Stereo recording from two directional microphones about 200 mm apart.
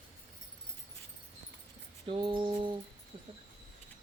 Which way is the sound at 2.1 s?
25° right (ahead or behind).